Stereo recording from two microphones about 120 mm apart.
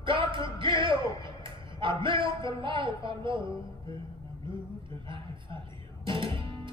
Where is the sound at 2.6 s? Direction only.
45° right (ahead or behind).